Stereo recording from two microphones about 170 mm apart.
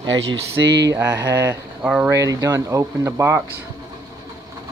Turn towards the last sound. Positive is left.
turn(degrees=-15)  # may be behind; listen again after turning